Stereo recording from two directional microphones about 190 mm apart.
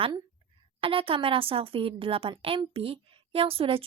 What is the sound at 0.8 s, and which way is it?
Speech, 30° right (ahead or behind).